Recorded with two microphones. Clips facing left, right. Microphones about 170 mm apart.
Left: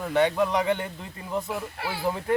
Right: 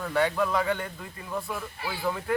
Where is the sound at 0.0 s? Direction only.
20° left (ahead or behind).